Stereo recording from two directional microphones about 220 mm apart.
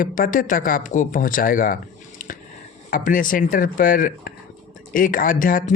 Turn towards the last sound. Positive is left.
turn(degrees=40)  # may be behind; listen again after turning